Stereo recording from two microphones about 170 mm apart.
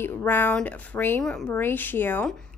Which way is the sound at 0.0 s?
10° left (ahead or behind).